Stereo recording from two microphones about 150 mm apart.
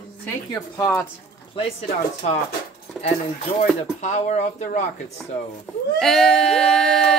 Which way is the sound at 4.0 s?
50° left (ahead or behind).